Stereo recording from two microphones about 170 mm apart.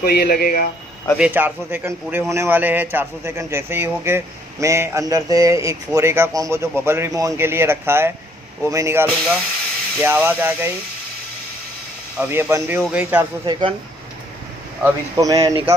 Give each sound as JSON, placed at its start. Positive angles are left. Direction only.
{"t": 0.0, "sound": "speech", "side_deg": 70}
{"t": 1.1, "sound": "a man's voice", "side_deg": -10}
{"t": 10.0, "sound": "a man's voice", "side_deg": -10}
{"t": 12.2, "sound": "a man's voice", "side_deg": -15}
{"t": 13.5, "sound": "speech", "side_deg": -30}
{"t": 14.8, "sound": "speech", "side_deg": -20}